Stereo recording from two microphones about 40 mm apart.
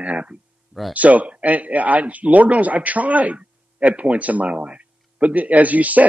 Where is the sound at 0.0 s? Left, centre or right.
Right.